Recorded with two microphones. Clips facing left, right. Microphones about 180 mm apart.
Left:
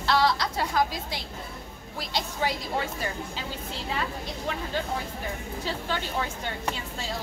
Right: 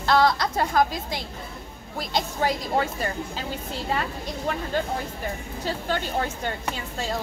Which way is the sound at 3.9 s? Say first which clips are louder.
Right 3 dB; 50° right (ahead or behind).